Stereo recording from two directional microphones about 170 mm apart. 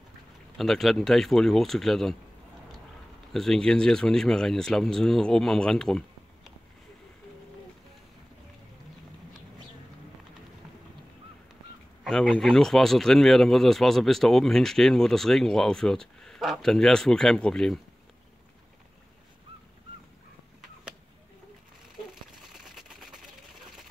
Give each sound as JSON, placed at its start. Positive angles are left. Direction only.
{"t": 0.6, "sound": "speech", "side_deg": 0}
{"t": 3.3, "sound": "speech", "side_deg": 5}
{"t": 12.0, "sound": "speech", "side_deg": 0}
{"t": 22.1, "sound": "a sound", "side_deg": 0}